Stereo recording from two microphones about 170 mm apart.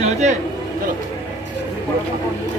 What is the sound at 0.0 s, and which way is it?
Speech, 45° right (ahead or behind).